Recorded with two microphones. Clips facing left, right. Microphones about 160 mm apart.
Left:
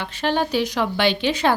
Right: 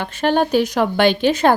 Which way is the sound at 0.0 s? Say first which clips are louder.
Right 5 dB; 50° right (ahead or behind).